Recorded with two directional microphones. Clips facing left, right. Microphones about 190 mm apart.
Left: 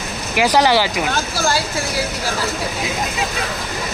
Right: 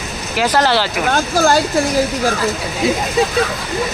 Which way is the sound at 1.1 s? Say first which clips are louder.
Right 6 dB; 50° right (ahead or behind).